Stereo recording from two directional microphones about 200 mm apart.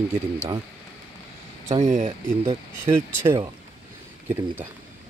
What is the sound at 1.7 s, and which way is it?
Speech, 35° right (ahead or behind).